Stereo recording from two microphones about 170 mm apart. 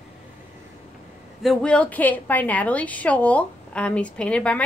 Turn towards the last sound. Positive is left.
turn(degrees=5)  # may be behind; listen again after turning